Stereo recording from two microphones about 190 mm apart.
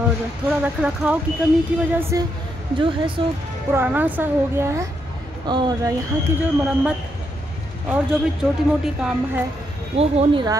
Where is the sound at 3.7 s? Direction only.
10° right (ahead or behind).